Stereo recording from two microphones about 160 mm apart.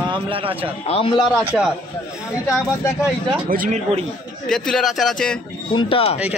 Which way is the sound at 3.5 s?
60° right (ahead or behind).